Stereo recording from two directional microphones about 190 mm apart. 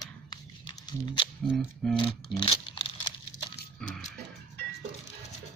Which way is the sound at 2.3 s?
25° left (ahead or behind).